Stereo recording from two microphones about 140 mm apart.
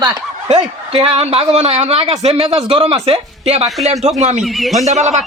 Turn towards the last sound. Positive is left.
turn(degrees=-55)  # may be behind; listen again after turning